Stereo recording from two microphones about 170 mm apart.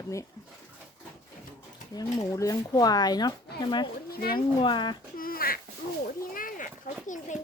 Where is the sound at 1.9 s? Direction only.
20° left (ahead or behind).